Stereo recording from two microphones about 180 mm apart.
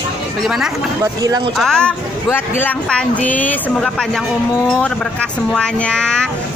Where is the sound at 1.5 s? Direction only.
5° left (ahead or behind).